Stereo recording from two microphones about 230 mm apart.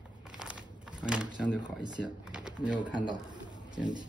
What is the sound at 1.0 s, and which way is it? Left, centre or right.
Speech, centre.